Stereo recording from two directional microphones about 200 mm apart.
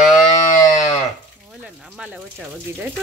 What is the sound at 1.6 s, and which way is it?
Speech, 5° right (ahead or behind).